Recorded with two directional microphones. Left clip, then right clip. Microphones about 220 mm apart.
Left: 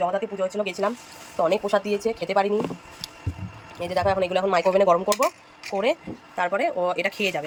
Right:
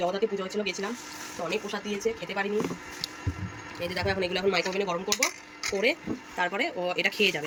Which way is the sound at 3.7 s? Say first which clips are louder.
Left 7 dB; 15° left (ahead or behind).